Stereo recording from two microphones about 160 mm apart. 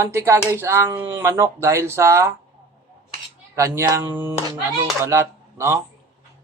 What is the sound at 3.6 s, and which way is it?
Speech, 20° right (ahead or behind).